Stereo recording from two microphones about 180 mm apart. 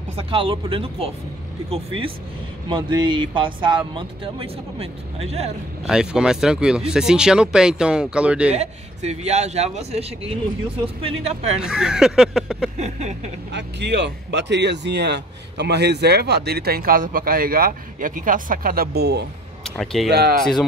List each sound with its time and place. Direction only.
0.1 s a man's voice: 30° right (ahead or behind)
5.9 s speech: 5° right (ahead or behind)
8.5 s a man's voice: 35° right (ahead or behind)
11.6 s speech: 5° right (ahead or behind)
12.7 s a man's voice: 40° right (ahead or behind)
13.5 s speech: 70° right (ahead or behind)
19.6 s speech: centre (ahead or behind)
20.1 s speech: 60° right (ahead or behind)